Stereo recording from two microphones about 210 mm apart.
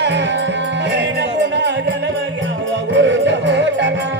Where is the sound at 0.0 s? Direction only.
55° right (ahead or behind).